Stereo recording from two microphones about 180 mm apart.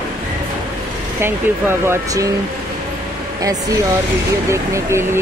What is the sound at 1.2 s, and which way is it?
Speech, 15° right (ahead or behind).